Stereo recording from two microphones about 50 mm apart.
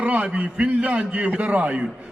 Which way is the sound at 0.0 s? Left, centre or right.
Right.